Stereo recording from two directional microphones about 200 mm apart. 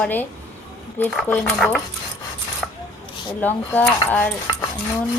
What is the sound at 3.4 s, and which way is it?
Speech, 10° left (ahead or behind).